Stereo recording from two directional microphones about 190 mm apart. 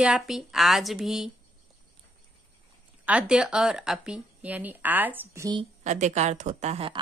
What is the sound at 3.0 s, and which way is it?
Speech, 5° right (ahead or behind).